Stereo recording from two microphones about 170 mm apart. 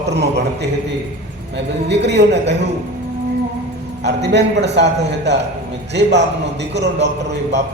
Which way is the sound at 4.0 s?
85° right.